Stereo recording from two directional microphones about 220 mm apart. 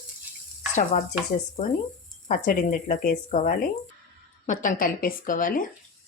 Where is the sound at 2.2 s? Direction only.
40° left (ahead or behind).